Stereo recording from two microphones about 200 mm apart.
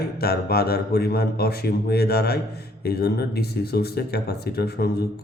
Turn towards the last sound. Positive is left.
turn(degrees=50)  # may be behind; listen again after turning